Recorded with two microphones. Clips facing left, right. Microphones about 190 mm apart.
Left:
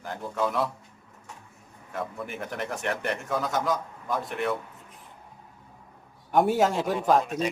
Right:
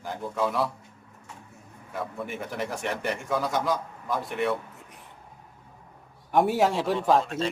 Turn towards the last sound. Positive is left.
turn(degrees=15)  # may be behind; listen again after turning